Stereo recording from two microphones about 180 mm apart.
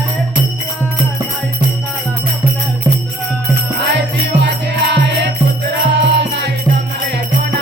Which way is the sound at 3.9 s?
75° right (ahead or behind).